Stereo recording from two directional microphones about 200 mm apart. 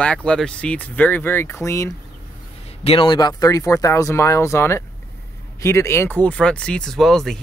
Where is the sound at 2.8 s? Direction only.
25° left (ahead or behind).